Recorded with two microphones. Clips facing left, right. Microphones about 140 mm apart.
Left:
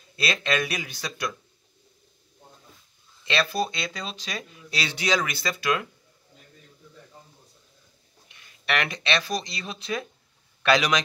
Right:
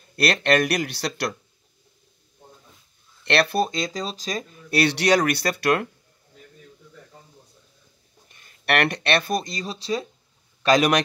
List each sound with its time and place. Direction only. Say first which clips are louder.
0.1 s speech: right 6 dB; 65° right (ahead or behind)
3.3 s speech: right 5 dB; 65° right (ahead or behind)
3.6 s speech: right 5 dB; 45° right (ahead or behind)
4.7 s speech: right 7 dB; 65° right (ahead or behind)
8.3 s a sound: left 2 dB; 45° right (ahead or behind)
8.6 s speech: right 5 dB; 60° right (ahead or behind); by 10.9 s 40° right (ahead or behind)